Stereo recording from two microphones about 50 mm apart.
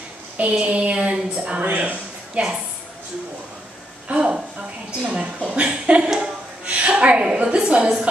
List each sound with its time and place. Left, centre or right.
0.4 s a woman's voice: right
1.6 s speech: right
4.1 s a woman's voice: centre
6.0 s a woman's voice: centre
6.6 s a woman's voice: right